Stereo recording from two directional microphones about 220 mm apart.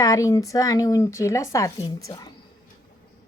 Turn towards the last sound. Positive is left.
turn(degrees=15)  # may be behind; listen again after turning